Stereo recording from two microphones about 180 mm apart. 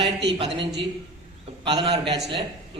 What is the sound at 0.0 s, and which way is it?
Speech, 70° right (ahead or behind).